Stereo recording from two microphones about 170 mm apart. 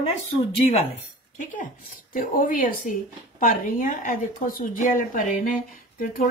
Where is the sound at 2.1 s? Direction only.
55° left (ahead or behind).